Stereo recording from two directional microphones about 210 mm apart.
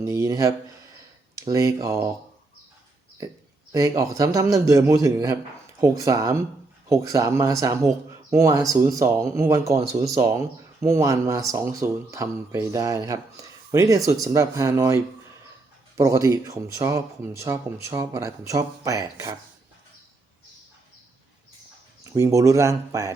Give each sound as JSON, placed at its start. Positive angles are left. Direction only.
{"t": 0.0, "sound": "speech", "side_deg": -15}
{"t": 3.7, "sound": "speech", "side_deg": -15}
{"t": 22.0, "sound": "speech", "side_deg": -15}